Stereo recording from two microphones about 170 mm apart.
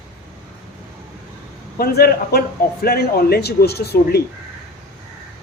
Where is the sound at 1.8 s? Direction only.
65° left (ahead or behind).